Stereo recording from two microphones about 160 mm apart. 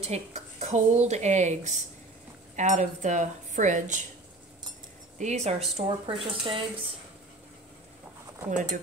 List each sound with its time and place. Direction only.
0.0 s a woman's voice: 45° right (ahead or behind)
5.2 s a woman's voice: 45° right (ahead or behind)
5.8 s speech: 35° right (ahead or behind)